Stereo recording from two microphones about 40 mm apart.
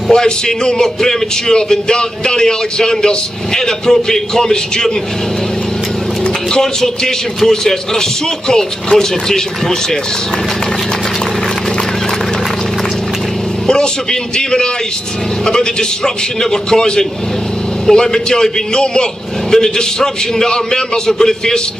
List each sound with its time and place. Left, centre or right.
0.1 s speech: centre
6.5 s speech: centre
16.7 s speech: centre